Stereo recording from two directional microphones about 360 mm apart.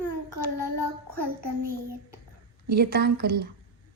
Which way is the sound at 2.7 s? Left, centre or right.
Right.